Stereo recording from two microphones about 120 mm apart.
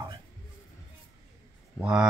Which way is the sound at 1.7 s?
5° right (ahead or behind).